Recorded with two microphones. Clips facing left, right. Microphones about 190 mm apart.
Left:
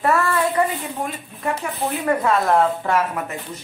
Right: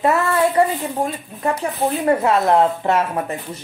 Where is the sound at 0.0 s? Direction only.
20° right (ahead or behind).